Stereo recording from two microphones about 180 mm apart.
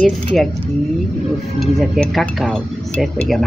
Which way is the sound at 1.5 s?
Centre (ahead or behind).